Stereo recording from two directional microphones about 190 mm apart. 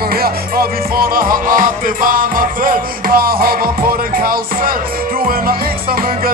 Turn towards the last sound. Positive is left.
turn(degrees=-50)  # may be behind; listen again after turning